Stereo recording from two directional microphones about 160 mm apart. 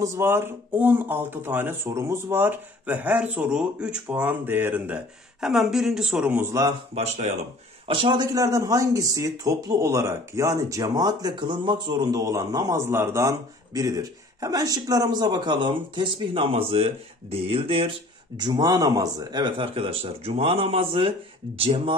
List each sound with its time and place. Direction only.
0.0 s speech: 15° right (ahead or behind)
7.0 s speech: 45° right (ahead or behind)
7.9 s speech: 30° right (ahead or behind)